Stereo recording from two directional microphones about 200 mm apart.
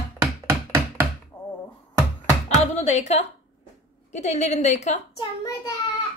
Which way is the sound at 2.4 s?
35° left (ahead or behind).